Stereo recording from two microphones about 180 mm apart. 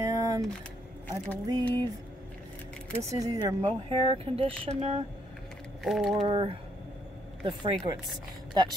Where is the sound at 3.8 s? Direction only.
30° right (ahead or behind).